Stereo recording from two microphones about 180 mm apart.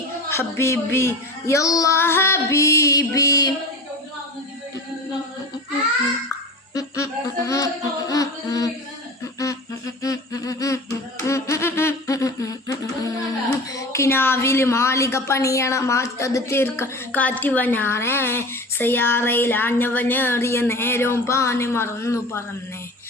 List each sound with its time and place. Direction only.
0.3 s a woman's voice: 15° left (ahead or behind)
6.7 s music: 15° left (ahead or behind)
9.4 s humming: 20° left (ahead or behind)
11.2 s a woman's voice: 15° left (ahead or behind)